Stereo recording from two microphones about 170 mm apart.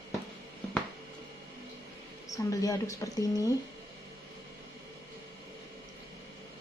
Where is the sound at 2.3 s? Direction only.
20° left (ahead or behind).